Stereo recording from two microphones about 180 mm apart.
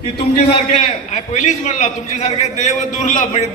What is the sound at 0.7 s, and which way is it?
A man's voice, 40° left (ahead or behind).